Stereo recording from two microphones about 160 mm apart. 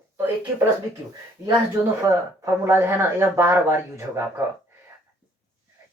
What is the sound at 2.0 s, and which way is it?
Speech, 20° right (ahead or behind).